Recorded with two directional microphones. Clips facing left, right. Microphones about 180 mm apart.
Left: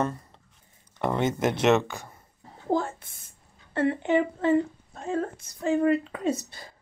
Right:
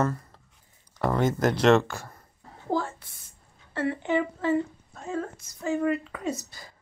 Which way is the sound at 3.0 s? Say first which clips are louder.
Left 1 dB; 50° left (ahead or behind).